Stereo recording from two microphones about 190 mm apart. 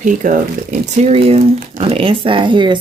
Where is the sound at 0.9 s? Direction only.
35° right (ahead or behind).